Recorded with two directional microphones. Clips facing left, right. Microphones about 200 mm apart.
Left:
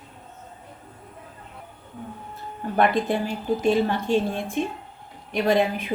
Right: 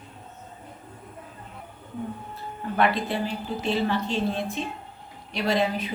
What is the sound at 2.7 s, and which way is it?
A woman's voice, 50° left (ahead or behind).